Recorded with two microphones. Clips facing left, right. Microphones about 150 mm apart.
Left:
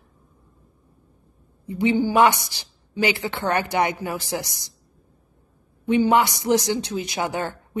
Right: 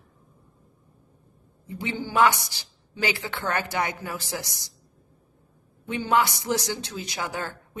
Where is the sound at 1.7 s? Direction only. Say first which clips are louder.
Left 11 dB; 15° left (ahead or behind).